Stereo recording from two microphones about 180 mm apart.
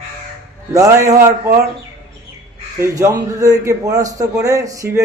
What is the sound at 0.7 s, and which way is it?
Speech, 15° right (ahead or behind).